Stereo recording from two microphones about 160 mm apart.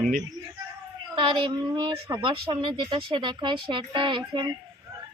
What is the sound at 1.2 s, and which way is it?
Speech, 30° right (ahead or behind).